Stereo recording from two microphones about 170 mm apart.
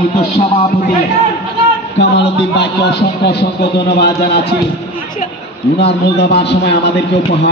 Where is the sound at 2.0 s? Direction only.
90° left.